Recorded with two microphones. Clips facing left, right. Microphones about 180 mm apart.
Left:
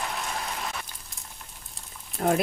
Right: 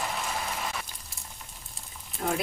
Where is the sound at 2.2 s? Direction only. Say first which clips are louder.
Left 6 dB; 50° left (ahead or behind).